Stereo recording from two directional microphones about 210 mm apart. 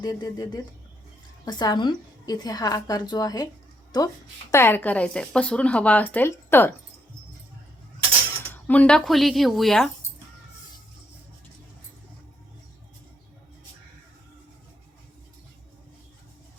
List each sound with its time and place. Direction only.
0.0 s speech: 20° left (ahead or behind)
8.6 s speech: 5° left (ahead or behind)